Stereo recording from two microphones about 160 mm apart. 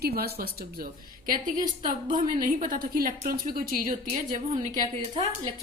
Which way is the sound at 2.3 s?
60° right (ahead or behind).